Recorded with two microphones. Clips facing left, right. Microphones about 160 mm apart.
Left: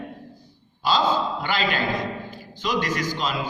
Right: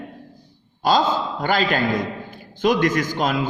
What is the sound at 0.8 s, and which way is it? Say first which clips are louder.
A man's voice: right 3 dB; 45° right (ahead or behind).